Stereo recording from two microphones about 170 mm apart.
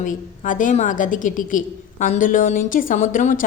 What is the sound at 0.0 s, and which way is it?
A woman's voice, 50° left (ahead or behind).